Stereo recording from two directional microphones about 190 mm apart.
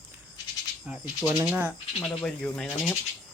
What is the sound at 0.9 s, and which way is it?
Speech, 10° right (ahead or behind).